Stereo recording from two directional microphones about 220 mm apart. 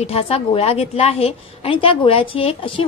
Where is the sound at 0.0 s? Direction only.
25° left (ahead or behind).